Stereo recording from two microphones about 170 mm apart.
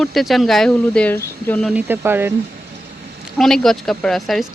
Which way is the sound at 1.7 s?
10° right (ahead or behind).